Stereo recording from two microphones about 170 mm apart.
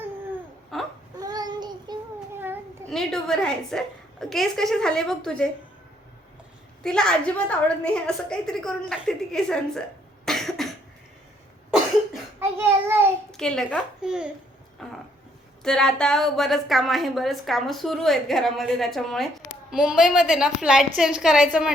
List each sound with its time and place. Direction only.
0.7 s baby cry: centre (ahead or behind)
1.2 s child singing: 20° right (ahead or behind)
2.9 s a woman's voice: centre (ahead or behind)
6.8 s a woman's voice: 5° left (ahead or behind)
10.2 s cough: centre (ahead or behind)
12.4 s a sound: 15° right (ahead or behind)
13.3 s a woman's voice: 5° left (ahead or behind)
14.8 s dog: 5° left (ahead or behind)
15.6 s a woman's voice: 5° left (ahead or behind)